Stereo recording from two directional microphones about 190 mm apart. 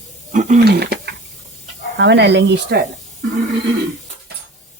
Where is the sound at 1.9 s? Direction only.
65° right (ahead or behind).